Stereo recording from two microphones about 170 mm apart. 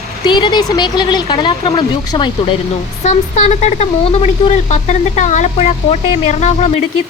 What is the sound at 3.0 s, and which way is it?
Speech, 45° left (ahead or behind).